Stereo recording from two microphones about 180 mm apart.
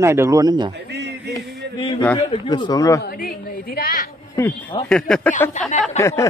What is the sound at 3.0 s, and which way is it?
A woman's voice, 55° left (ahead or behind).